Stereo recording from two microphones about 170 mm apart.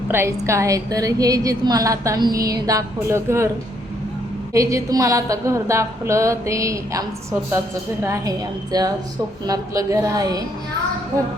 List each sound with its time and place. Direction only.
0.1 s a woman's voice: 15° right (ahead or behind)
4.5 s a woman's voice: 20° right (ahead or behind)
8.0 s a woman's voice: 20° right (ahead or behind)